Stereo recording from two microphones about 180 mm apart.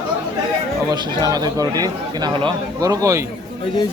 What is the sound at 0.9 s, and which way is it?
Speech, 20° right (ahead or behind).